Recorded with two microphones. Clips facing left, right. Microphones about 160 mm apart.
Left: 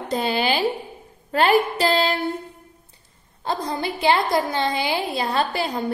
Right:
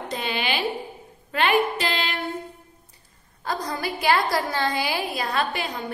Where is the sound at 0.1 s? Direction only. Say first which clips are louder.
Left 6 dB; 35° left (ahead or behind).